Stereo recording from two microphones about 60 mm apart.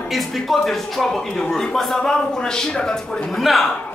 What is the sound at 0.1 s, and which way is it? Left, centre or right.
A man's voice, centre.